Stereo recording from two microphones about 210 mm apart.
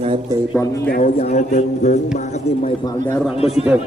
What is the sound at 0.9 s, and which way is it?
A man's voice, 40° left (ahead or behind).